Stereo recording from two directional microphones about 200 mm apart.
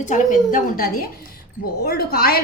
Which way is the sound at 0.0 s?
40° left (ahead or behind).